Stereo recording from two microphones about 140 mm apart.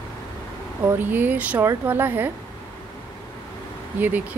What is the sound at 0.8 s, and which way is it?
Speech, 15° right (ahead or behind).